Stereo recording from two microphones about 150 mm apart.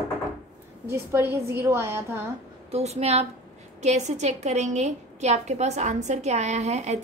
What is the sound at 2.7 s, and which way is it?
A woman's voice, 45° right (ahead or behind).